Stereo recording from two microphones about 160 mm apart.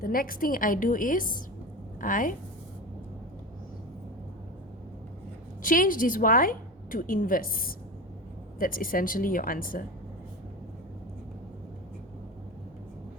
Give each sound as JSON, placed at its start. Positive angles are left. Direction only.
{"t": 0.0, "sound": "a woman's voice", "side_deg": 65}
{"t": 5.6, "sound": "a woman's voice", "side_deg": 60}